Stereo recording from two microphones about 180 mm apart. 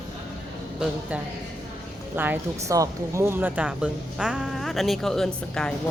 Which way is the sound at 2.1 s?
10° right (ahead or behind).